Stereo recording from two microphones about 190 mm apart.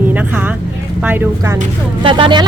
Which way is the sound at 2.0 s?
25° right (ahead or behind).